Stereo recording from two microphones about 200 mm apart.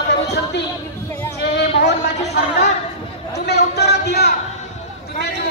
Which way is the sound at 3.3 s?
55° left (ahead or behind).